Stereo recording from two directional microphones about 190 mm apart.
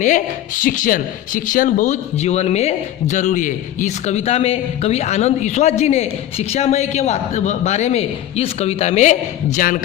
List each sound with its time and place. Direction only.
0.0 s a man's voice: 45° left (ahead or behind)